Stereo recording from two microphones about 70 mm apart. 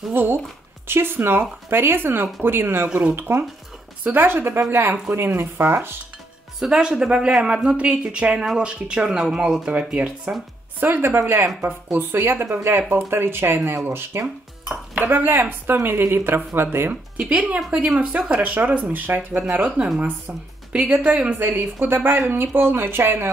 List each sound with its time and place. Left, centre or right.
0.1 s speech: right
6.6 s speech: centre
10.8 s speech: right
17.3 s speech: right
20.7 s speech: centre
21.4 s speech: right